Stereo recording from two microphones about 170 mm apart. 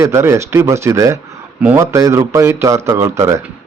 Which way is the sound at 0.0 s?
15° right (ahead or behind).